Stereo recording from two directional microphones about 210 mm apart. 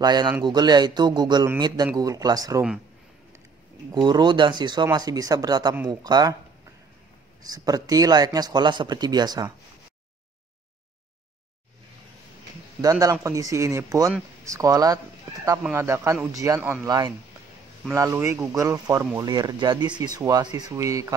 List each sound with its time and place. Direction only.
0.0 s speech: 20° right (ahead or behind)
3.9 s speech: 20° right (ahead or behind)
7.4 s speech: 20° right (ahead or behind)
12.8 s speech: 15° right (ahead or behind)